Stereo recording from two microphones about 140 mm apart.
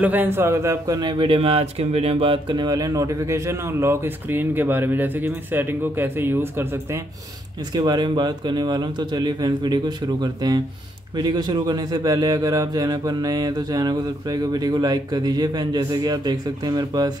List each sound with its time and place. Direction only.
0.0 s a man's voice: 15° right (ahead or behind)
7.7 s a man's voice: 30° right (ahead or behind)